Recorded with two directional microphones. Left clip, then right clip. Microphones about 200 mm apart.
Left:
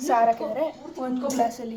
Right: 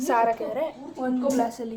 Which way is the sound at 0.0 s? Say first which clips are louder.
Left 2 dB; 20° right (ahead or behind).